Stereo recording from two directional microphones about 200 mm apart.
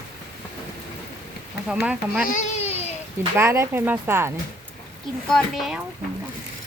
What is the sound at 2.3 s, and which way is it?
Baby cry, 40° left (ahead or behind).